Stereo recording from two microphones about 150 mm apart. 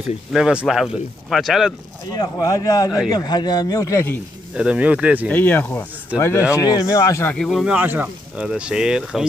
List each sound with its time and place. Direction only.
0.3 s speech: 5° right (ahead or behind)
2.1 s speech: 25° left (ahead or behind)
4.6 s speech: 10° right (ahead or behind)
5.3 s speech: 10° left (ahead or behind)
7.3 s speech: centre (ahead or behind)